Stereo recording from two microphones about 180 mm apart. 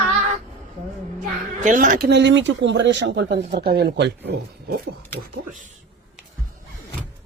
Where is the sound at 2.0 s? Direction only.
75° right (ahead or behind).